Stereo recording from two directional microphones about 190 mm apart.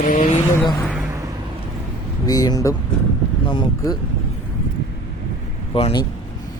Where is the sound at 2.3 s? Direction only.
20° left (ahead or behind).